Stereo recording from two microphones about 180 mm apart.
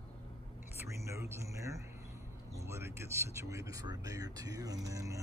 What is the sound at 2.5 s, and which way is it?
Speech, 15° right (ahead or behind).